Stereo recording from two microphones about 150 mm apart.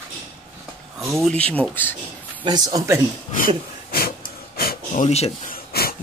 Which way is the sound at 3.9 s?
80° left.